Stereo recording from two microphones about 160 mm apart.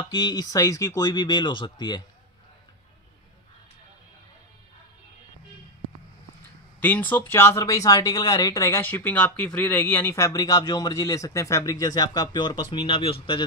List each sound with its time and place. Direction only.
0.1 s speech: 25° left (ahead or behind)
6.8 s speech: 10° left (ahead or behind); by 13.4 s 35° left (ahead or behind)